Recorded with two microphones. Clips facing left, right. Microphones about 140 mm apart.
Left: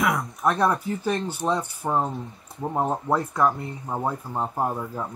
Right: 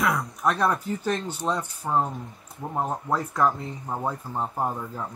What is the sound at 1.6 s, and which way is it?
Speech, 15° left (ahead or behind).